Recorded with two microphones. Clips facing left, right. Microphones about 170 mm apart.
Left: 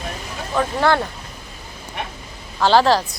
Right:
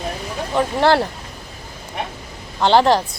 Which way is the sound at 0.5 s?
30° right (ahead or behind).